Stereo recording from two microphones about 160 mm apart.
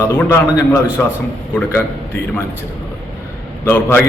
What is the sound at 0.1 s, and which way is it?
Speech, 15° left (ahead or behind).